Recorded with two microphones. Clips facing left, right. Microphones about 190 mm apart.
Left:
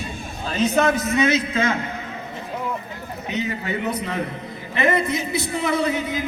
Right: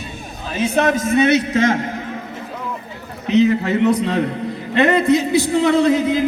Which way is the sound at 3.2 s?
70° right (ahead or behind).